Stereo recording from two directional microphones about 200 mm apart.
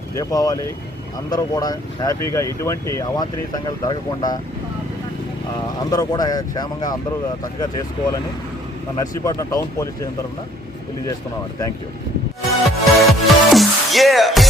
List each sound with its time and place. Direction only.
0.1 s speech: 15° left (ahead or behind)
5.8 s speech: 20° left (ahead or behind)
9.0 s speech: 15° left (ahead or behind)
12.6 s music: centre (ahead or behind)